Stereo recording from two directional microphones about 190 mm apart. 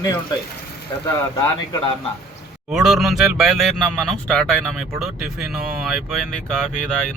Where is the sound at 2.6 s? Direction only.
Centre (ahead or behind).